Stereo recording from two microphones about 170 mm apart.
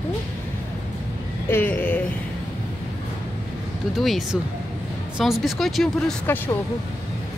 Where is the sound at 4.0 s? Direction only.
Centre (ahead or behind).